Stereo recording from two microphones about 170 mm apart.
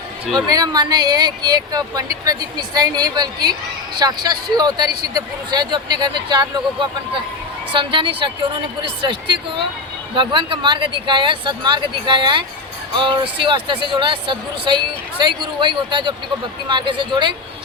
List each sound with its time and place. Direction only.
0.3 s speech: 20° right (ahead or behind)